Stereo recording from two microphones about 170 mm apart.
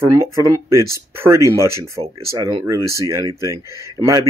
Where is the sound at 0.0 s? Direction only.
20° right (ahead or behind).